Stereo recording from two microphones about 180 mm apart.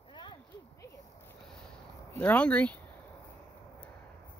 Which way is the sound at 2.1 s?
10° left (ahead or behind).